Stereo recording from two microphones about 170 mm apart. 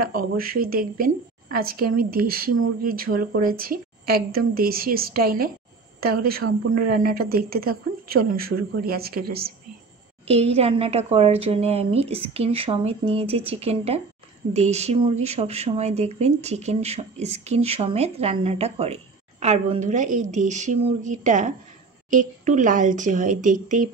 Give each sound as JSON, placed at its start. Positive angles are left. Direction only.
{"t": 0.0, "sound": "a woman's voice", "side_deg": -60}
{"t": 10.2, "sound": "a woman's voice", "side_deg": -35}